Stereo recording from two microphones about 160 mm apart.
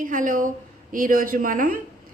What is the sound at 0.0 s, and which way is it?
A woman's voice, 55° right (ahead or behind).